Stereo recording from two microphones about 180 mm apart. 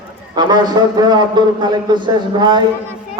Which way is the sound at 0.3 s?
25° right (ahead or behind).